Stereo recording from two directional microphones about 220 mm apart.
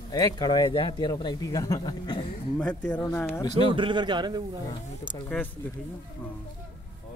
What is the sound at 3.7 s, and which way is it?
Speech, 20° right (ahead or behind).